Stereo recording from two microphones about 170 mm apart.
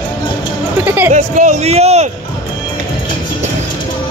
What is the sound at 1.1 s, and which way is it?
A man's voice, 45° right (ahead or behind).